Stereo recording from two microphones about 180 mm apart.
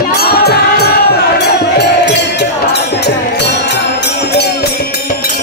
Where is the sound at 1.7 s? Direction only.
70° left (ahead or behind).